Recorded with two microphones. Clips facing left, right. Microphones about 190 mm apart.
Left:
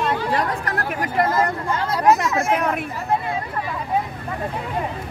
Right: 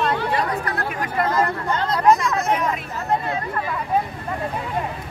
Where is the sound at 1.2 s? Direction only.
5° left (ahead or behind).